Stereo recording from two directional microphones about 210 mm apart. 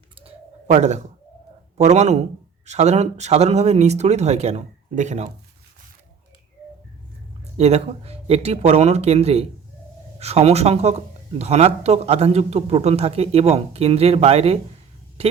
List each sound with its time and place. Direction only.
0.2 s bird: 30° right (ahead or behind)
1.8 s speech: 30° right (ahead or behind)
7.5 s a man's voice: 30° right (ahead or behind)